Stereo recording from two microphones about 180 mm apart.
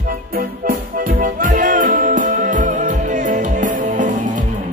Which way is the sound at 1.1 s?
50° right (ahead or behind).